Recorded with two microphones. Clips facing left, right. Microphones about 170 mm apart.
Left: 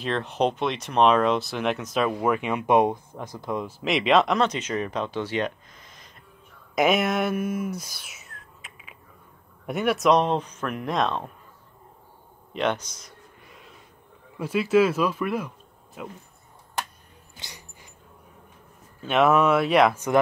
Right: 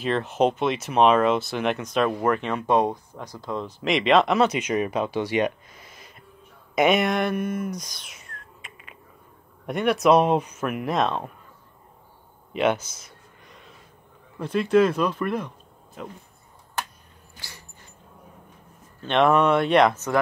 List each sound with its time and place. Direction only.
0.0 s speech: centre (ahead or behind); by 3.6 s 20° left (ahead or behind)
3.6 s speech: centre (ahead or behind)
12.5 s a sound: 5° right (ahead or behind)
14.4 s speech: 5° left (ahead or behind)
17.4 s dog: 20° left (ahead or behind)
18.9 s speech: 5° left (ahead or behind)